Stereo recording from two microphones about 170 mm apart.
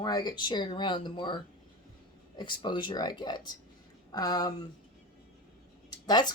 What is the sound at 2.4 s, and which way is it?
Speech, 25° left (ahead or behind).